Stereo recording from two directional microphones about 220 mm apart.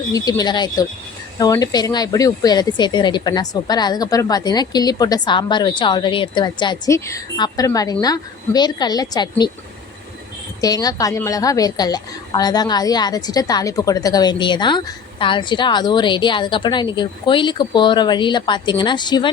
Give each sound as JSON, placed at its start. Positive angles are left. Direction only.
{"t": 0.1, "sound": "a woman's voice", "side_deg": 15}
{"t": 10.6, "sound": "a woman's voice", "side_deg": 15}